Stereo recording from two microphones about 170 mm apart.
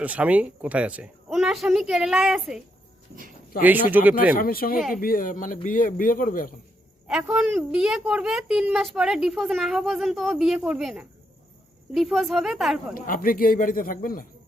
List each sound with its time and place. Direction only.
0.0 s a woman's voice: 10° right (ahead or behind)
3.5 s a man's voice: 60° left (ahead or behind)
7.1 s a woman's voice: 5° right (ahead or behind)
12.9 s a man's voice: 55° left (ahead or behind)